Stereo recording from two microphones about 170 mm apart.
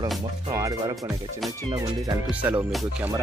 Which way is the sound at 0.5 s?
20° right (ahead or behind).